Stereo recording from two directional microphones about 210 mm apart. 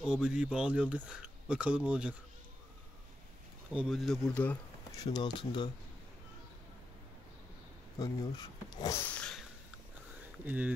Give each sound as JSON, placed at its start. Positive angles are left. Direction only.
{"t": 0.0, "sound": "speech", "side_deg": -5}
{"t": 3.7, "sound": "speech", "side_deg": 0}
{"t": 4.9, "sound": "speech", "side_deg": 20}
{"t": 8.0, "sound": "speech", "side_deg": 15}
{"t": 10.4, "sound": "speech", "side_deg": -10}